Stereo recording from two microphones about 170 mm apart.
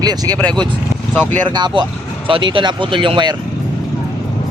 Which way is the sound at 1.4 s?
25° right (ahead or behind).